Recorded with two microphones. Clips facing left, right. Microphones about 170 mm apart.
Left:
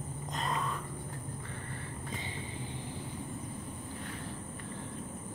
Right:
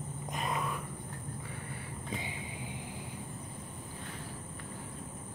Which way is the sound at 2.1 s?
10° right (ahead or behind).